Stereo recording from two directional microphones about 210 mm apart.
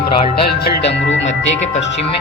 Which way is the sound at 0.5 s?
50° left (ahead or behind).